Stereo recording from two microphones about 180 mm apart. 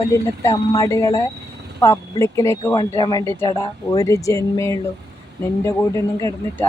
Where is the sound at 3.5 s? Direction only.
25° left (ahead or behind).